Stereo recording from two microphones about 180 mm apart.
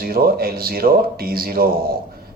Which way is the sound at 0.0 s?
55° right (ahead or behind).